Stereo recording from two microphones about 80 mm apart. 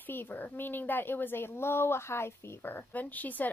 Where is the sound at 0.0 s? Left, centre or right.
Left.